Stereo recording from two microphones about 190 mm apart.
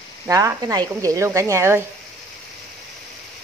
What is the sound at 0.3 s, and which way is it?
Speech, 15° right (ahead or behind).